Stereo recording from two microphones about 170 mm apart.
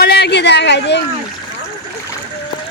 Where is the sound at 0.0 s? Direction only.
70° left (ahead or behind); by 1.0 s 90° left.